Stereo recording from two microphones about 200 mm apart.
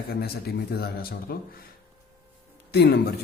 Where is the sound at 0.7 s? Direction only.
50° left (ahead or behind).